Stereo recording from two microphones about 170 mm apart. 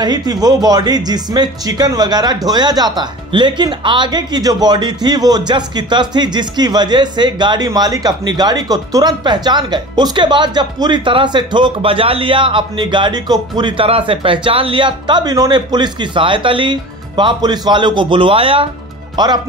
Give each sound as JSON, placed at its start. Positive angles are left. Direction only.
{"t": 0.0, "sound": "speech", "side_deg": -25}